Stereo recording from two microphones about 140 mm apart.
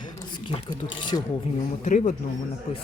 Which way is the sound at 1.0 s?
35° left (ahead or behind).